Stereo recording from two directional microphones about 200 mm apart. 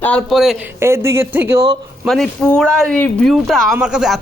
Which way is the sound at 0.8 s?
15° right (ahead or behind).